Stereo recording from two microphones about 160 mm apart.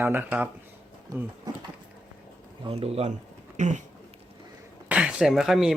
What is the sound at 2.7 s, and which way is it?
Speech, 40° right (ahead or behind).